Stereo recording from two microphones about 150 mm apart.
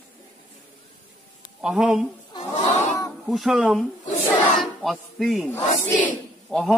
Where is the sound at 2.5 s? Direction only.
50° left (ahead or behind).